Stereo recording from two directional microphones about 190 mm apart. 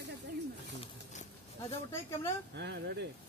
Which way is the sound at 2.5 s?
65° right (ahead or behind).